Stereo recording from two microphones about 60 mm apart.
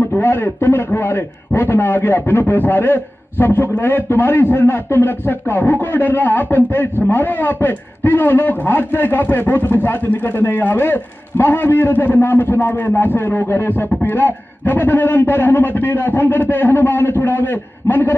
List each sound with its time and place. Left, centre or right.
0.0 s a man's voice: left